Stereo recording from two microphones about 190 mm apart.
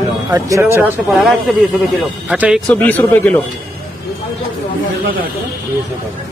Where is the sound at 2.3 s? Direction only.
5° right (ahead or behind).